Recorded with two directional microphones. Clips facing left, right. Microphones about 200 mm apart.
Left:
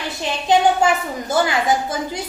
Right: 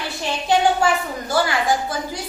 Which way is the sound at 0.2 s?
20° left (ahead or behind).